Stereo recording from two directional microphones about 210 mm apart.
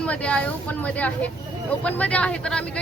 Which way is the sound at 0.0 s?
5° left (ahead or behind).